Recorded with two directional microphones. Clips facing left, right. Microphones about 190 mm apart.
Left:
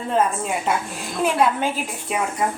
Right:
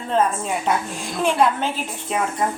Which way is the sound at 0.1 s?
5° left (ahead or behind).